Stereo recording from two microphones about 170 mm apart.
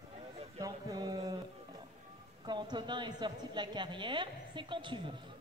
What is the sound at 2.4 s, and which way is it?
A woman's voice, 25° right (ahead or behind).